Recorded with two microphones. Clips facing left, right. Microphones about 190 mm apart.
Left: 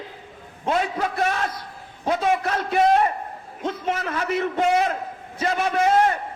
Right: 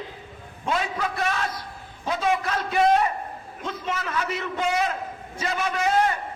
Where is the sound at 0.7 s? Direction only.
50° left (ahead or behind).